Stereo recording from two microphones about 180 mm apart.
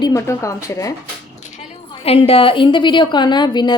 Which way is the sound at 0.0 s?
15° left (ahead or behind).